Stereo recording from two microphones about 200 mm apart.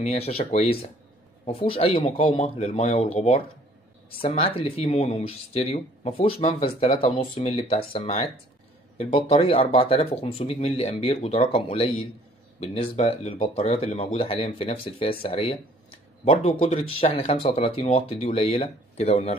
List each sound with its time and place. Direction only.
0.0 s speech: 30° left (ahead or behind)